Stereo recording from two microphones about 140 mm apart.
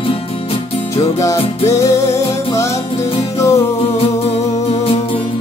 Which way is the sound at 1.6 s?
20° left (ahead or behind).